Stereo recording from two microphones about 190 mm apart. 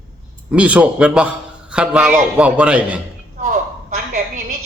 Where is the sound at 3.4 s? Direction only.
45° right (ahead or behind).